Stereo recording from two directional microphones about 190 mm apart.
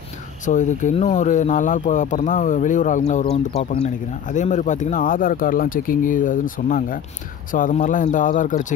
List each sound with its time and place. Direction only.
0.5 s speech: 40° left (ahead or behind)